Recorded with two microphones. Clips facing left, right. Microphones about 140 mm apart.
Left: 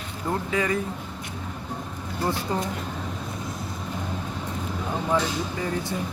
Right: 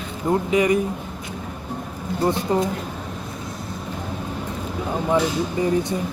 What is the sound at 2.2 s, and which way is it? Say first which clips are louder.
Speech: right 6 dB; 20° right (ahead or behind).